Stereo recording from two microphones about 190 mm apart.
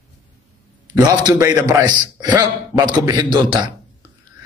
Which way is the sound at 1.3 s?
10° right (ahead or behind).